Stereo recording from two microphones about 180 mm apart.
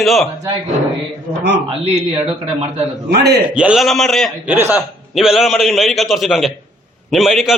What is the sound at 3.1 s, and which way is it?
Speech, 65° right (ahead or behind).